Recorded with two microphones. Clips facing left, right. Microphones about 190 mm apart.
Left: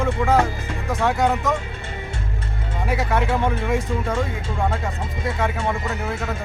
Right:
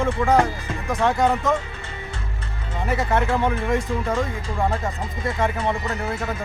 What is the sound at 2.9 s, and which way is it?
Speech, centre (ahead or behind).